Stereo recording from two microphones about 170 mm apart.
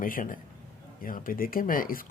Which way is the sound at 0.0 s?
55° left (ahead or behind).